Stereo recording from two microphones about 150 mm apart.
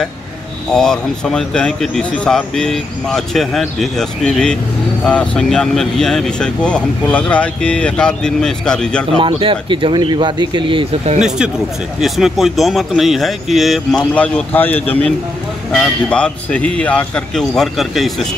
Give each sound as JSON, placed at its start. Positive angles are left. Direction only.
{"t": 0.7, "sound": "speech", "side_deg": 5}
{"t": 9.2, "sound": "speech", "side_deg": -35}
{"t": 11.1, "sound": "speech", "side_deg": -5}
{"t": 14.1, "sound": "a man's voice", "side_deg": 10}